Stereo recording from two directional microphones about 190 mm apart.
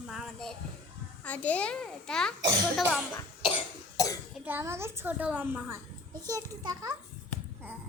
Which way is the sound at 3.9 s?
20° left (ahead or behind).